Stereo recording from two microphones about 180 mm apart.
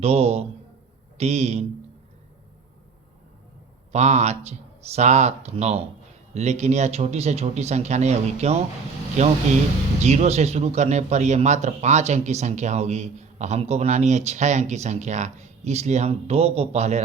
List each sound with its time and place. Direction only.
0.0 s a man's voice: 35° right (ahead or behind)
3.9 s a man's voice: 40° right (ahead or behind)